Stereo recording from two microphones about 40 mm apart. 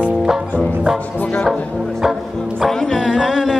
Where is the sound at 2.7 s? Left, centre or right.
Centre.